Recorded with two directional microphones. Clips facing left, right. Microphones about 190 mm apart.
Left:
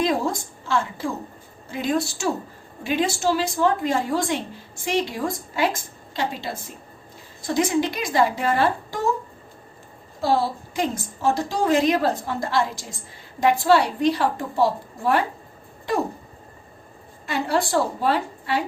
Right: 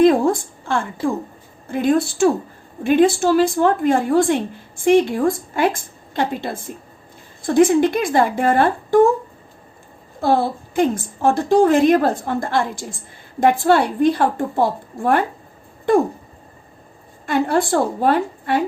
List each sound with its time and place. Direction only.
0.0 s a woman's voice: 55° right (ahead or behind)
10.2 s a woman's voice: 55° right (ahead or behind)
17.2 s a woman's voice: 50° right (ahead or behind)